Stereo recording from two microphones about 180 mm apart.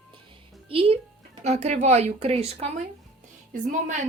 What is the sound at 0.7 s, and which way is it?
A woman's voice, 30° right (ahead or behind).